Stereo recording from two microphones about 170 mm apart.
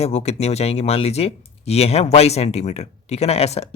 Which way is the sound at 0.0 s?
35° left (ahead or behind).